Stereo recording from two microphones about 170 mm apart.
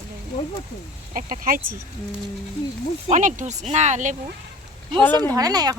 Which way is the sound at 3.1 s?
45° right (ahead or behind).